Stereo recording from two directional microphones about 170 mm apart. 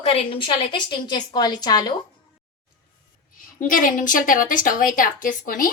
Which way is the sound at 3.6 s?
50° left (ahead or behind).